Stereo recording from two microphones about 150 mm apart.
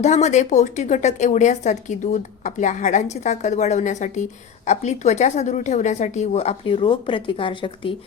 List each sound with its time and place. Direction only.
0.0 s a woman's voice: 50° left (ahead or behind); by 7.9 s 35° left (ahead or behind)